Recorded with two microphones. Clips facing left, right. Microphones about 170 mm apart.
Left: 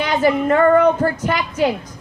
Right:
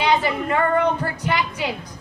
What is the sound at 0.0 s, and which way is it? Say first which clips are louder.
A woman's voice: left 4 dB; 45° left (ahead or behind).